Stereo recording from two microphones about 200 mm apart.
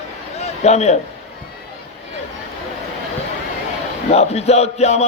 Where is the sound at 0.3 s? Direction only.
35° left (ahead or behind).